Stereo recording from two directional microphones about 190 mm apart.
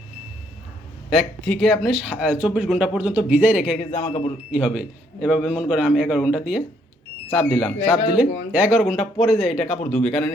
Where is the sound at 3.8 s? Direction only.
35° left (ahead or behind).